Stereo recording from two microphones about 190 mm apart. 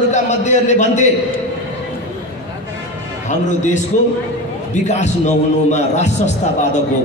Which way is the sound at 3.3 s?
40° left (ahead or behind).